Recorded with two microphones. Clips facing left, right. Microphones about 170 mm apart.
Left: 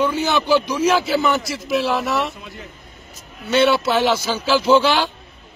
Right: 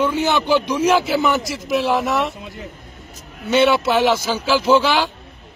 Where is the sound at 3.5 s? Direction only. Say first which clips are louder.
Right 1 dB; 15° right (ahead or behind).